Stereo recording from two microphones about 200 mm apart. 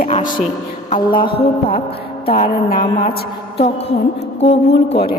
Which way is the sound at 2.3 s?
50° left (ahead or behind).